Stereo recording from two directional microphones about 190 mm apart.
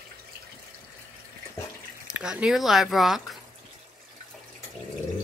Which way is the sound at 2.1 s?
5° right (ahead or behind).